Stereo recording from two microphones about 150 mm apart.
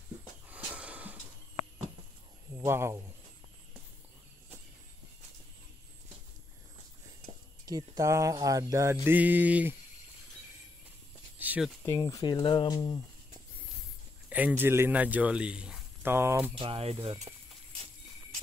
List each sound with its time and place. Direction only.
0.5 s snort: 10° right (ahead or behind)
2.5 s speech: 20° right (ahead or behind)
7.6 s mantra: 25° right (ahead or behind)
11.3 s a sound: 10° right (ahead or behind)
11.8 s speech: 20° left (ahead or behind)
14.3 s a man's voice: 10° right (ahead or behind)
16.5 s speech: 40° right (ahead or behind)